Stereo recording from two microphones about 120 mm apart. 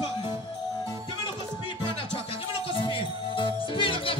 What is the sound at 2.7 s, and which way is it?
Music, 45° left (ahead or behind).